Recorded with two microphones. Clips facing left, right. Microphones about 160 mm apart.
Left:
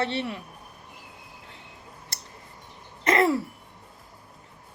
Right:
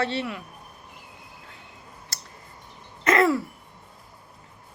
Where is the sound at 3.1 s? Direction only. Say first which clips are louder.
Right 1 dB; 25° left (ahead or behind).